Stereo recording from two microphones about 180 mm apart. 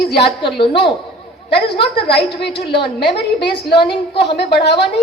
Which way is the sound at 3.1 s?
70° left (ahead or behind).